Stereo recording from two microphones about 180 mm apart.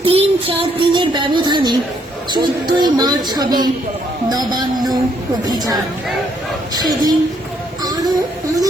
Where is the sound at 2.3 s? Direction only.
25° right (ahead or behind).